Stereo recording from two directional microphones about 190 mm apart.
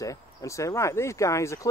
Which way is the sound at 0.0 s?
15° left (ahead or behind).